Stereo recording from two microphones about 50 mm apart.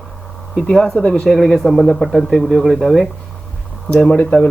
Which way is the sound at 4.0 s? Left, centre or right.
Centre.